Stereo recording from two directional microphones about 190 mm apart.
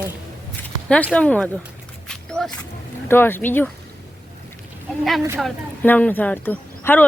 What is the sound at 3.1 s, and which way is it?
Speech, 10° left (ahead or behind).